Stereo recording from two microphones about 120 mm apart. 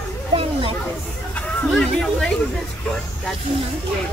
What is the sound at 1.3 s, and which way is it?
Speech, 10° left (ahead or behind).